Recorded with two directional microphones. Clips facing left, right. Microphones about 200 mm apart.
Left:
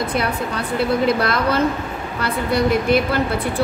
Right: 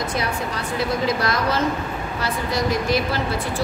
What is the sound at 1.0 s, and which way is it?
A woman's voice, 60° left (ahead or behind).